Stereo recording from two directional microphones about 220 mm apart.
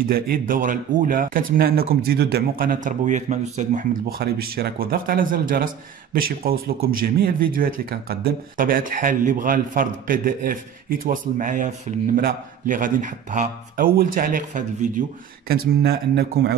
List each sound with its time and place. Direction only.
0.1 s speech: 40° right (ahead or behind)